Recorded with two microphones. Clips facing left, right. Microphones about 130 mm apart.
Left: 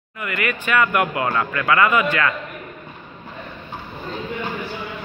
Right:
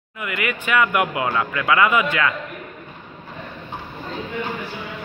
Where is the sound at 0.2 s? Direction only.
15° right (ahead or behind).